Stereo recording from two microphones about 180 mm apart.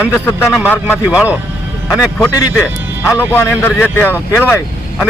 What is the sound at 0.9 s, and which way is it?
Speech, 5° right (ahead or behind).